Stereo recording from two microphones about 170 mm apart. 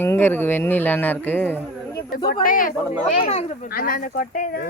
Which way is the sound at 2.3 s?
55° left (ahead or behind).